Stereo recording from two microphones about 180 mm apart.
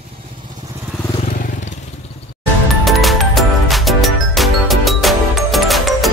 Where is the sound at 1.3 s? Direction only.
45° left (ahead or behind).